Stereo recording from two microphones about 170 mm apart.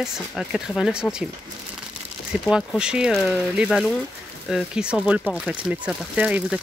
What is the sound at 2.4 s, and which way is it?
Speech, centre (ahead or behind).